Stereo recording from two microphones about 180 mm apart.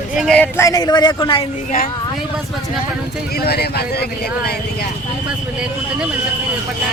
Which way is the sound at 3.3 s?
60° left (ahead or behind).